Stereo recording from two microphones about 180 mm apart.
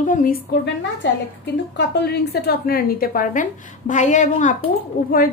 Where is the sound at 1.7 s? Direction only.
65° left (ahead or behind).